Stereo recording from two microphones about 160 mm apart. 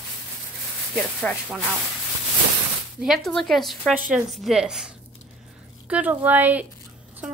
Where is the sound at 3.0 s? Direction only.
Centre (ahead or behind).